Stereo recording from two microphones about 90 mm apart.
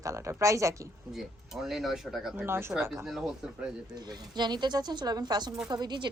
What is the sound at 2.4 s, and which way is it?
Speech, 25° right (ahead or behind).